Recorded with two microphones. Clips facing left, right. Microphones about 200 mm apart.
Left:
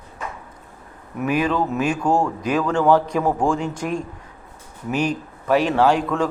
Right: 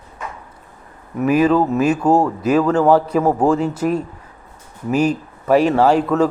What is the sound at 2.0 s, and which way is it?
Speech, 40° right (ahead or behind).